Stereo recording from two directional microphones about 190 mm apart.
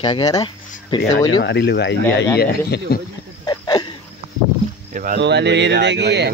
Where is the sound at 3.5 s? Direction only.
20° left (ahead or behind).